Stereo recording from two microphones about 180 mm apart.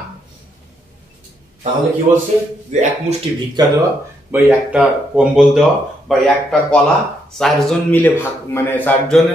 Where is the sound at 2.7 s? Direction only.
45° right (ahead or behind).